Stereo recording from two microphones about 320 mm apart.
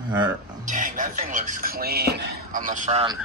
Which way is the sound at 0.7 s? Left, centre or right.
Right.